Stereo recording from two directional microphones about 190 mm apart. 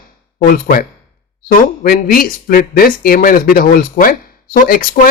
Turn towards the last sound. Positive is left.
turn(degrees=50)  # may be behind; listen again after turning